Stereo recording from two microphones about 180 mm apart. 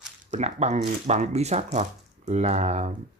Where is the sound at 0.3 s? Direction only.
40° right (ahead or behind).